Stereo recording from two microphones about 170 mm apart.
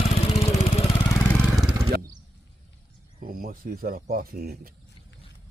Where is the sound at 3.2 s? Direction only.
55° right (ahead or behind).